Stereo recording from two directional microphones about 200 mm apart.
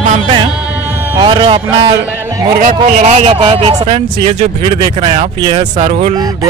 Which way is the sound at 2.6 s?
40° right (ahead or behind).